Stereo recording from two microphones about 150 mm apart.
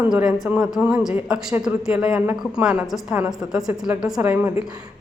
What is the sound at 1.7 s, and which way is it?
A woman's voice, 15° right (ahead or behind).